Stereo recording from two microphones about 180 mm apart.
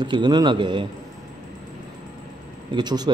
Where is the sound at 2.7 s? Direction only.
25° right (ahead or behind).